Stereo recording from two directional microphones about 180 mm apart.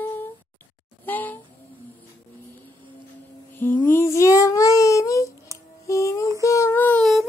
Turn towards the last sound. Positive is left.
turn(degrees=5)  # may be behind; listen again after turning